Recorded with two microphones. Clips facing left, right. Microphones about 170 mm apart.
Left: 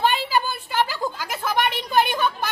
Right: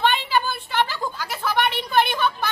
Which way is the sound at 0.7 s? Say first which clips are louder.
Left 1 dB; 10° left (ahead or behind).